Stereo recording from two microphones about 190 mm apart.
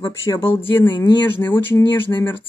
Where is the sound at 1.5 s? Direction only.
15° left (ahead or behind).